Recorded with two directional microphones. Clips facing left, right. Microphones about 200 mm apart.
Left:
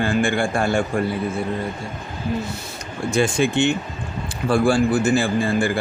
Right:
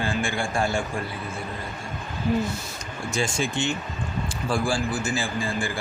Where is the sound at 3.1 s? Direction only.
60° left (ahead or behind).